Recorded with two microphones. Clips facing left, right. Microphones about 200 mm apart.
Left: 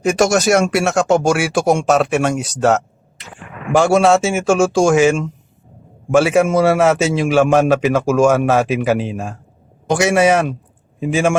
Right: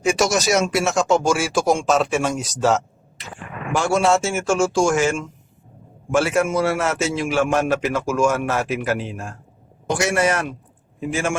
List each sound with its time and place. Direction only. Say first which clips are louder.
0.0 s speech: left 5 dB; 50° left (ahead or behind)
3.7 s a man's voice: left 6 dB; 80° left